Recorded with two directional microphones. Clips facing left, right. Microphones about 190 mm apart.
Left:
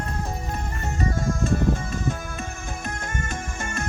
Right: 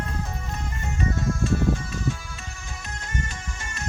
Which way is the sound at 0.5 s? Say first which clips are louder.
Left 2 dB; 40° left (ahead or behind).